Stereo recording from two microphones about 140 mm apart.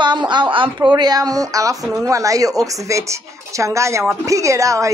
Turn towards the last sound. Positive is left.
turn(degrees=-20)  # may be behind; listen again after turning